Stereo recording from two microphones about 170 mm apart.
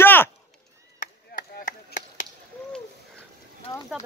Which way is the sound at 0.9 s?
50° left (ahead or behind).